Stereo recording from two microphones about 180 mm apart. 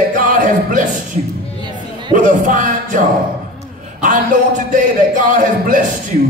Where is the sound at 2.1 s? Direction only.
45° right (ahead or behind).